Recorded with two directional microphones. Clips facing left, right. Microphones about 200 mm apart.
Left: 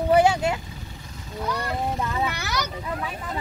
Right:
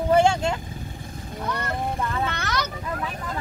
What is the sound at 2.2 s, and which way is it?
Speech, 10° left (ahead or behind).